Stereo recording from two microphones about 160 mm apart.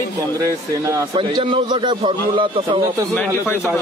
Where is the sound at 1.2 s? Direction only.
30° right (ahead or behind).